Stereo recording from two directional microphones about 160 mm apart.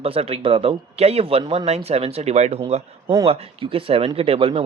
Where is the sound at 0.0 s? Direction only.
40° right (ahead or behind).